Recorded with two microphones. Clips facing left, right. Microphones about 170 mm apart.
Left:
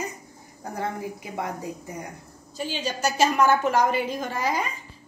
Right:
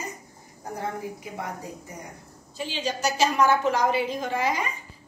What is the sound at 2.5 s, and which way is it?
A woman's voice, 45° left (ahead or behind).